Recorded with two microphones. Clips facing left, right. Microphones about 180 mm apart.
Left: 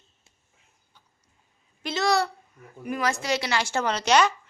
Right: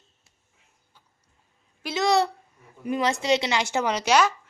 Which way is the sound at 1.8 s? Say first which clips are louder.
Right 2 dB; 15° right (ahead or behind).